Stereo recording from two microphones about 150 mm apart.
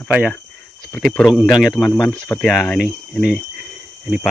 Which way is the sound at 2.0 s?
15° left (ahead or behind).